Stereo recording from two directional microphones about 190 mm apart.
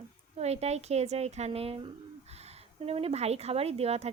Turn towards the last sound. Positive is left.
turn(degrees=-35)  # may be behind; listen again after turning